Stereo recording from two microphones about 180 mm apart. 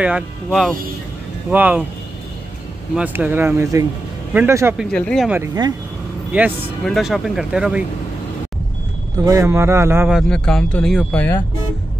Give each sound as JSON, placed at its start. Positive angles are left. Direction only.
{"t": 0.5, "sound": "speech", "side_deg": 5}
{"t": 1.5, "sound": "speech", "side_deg": -10}
{"t": 3.0, "sound": "speech", "side_deg": -10}
{"t": 4.9, "sound": "speech", "side_deg": 5}
{"t": 5.3, "sound": "speech", "side_deg": -15}
{"t": 6.3, "sound": "speech", "side_deg": -5}
{"t": 9.2, "sound": "speech", "side_deg": -20}
{"t": 10.1, "sound": "speech", "side_deg": 5}